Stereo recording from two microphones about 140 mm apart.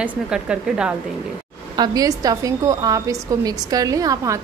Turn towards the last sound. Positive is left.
turn(degrees=-25)  # may be behind; listen again after turning